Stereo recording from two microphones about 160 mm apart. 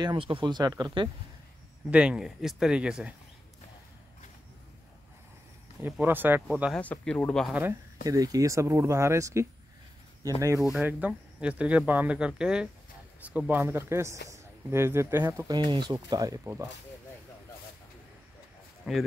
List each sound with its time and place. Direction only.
0.0 s speech: 30° right (ahead or behind)
1.9 s speech: 5° right (ahead or behind)
5.8 s speech: 10° right (ahead or behind)
6.7 s speech: 5° left (ahead or behind)
8.0 s speech: 20° right (ahead or behind)
18.9 s speech: 5° right (ahead or behind)